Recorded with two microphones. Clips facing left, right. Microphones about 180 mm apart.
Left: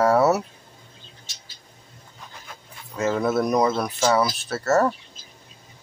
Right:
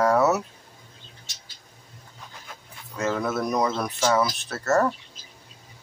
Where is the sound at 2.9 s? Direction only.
5° left (ahead or behind).